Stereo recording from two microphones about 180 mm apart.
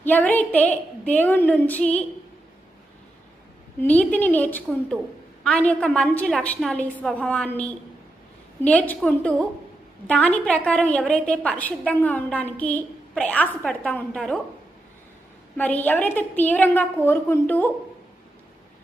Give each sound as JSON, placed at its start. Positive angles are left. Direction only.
{"t": 0.0, "sound": "a woman's voice", "side_deg": 10}
{"t": 3.8, "sound": "a woman's voice", "side_deg": 10}
{"t": 15.5, "sound": "a woman's voice", "side_deg": 10}